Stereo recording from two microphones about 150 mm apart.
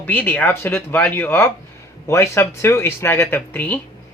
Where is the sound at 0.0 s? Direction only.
10° left (ahead or behind).